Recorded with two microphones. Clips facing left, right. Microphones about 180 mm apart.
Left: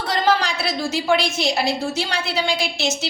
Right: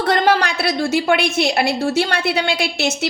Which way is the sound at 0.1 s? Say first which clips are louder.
Right 3 dB; 60° right (ahead or behind).